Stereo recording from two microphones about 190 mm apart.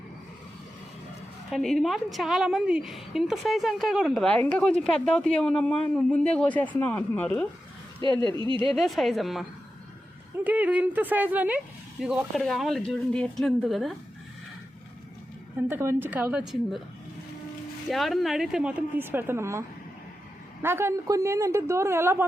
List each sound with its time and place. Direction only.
1.5 s a woman's voice: centre (ahead or behind)
8.3 s speech: 25° right (ahead or behind)
8.7 s a woman's voice: centre (ahead or behind)
15.5 s speech: 10° right (ahead or behind)
17.8 s a woman's voice: centre (ahead or behind)